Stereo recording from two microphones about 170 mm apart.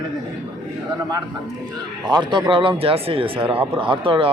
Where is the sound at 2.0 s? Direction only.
25° right (ahead or behind).